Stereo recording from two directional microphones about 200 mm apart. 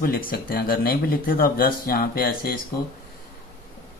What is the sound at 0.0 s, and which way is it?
Speech, 45° left (ahead or behind).